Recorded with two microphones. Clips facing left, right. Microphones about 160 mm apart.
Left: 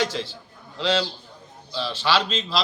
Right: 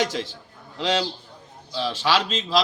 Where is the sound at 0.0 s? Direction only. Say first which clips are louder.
Right 1 dB; 15° right (ahead or behind).